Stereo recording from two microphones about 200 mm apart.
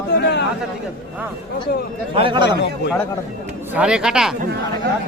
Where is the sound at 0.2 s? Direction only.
60° left (ahead or behind).